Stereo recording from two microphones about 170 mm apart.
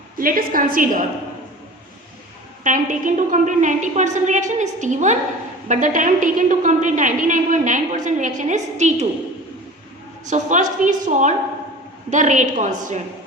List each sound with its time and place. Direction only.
0.2 s a woman's voice: 55° right (ahead or behind)
2.6 s a woman's voice: 50° right (ahead or behind)
10.2 s a woman's voice: 45° right (ahead or behind)